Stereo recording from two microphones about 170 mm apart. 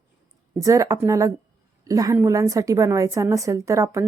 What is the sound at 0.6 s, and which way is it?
A woman's voice, 20° right (ahead or behind).